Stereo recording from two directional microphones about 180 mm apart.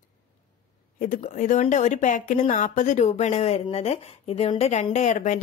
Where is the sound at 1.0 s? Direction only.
45° left (ahead or behind).